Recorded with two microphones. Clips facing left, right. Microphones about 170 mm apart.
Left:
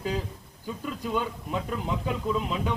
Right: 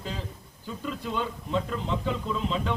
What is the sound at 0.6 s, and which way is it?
Speech, 10° left (ahead or behind).